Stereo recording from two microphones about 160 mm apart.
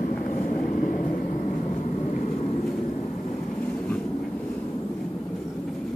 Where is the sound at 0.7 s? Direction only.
60° left (ahead or behind).